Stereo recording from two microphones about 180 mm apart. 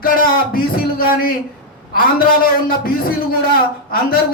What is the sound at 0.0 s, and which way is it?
A man's voice, 55° left (ahead or behind).